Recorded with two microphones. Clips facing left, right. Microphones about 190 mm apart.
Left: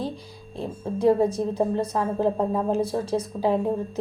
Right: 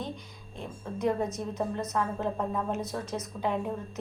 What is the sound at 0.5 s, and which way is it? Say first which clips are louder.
A woman's voice: left 8 dB; 30° left (ahead or behind).